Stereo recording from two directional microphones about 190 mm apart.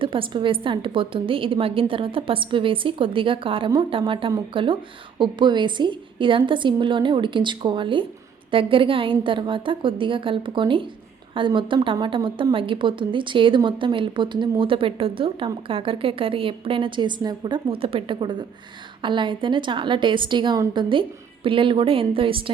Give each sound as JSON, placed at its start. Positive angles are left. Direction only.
{"t": 0.0, "sound": "a woman's voice", "side_deg": -25}